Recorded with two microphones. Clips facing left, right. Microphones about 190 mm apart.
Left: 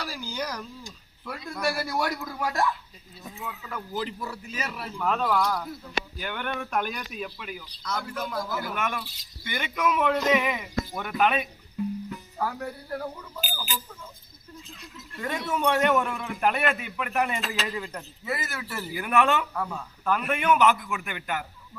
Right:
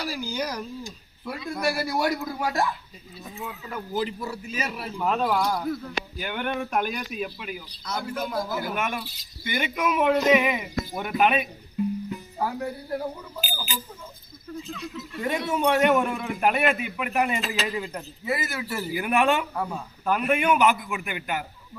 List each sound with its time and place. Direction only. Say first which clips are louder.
0.0 s a man's voice: right 4 dB; 10° right (ahead or behind)
14.8 s speech: right 10 dB; 80° right
15.4 s a man's voice: right 2 dB; 15° right (ahead or behind)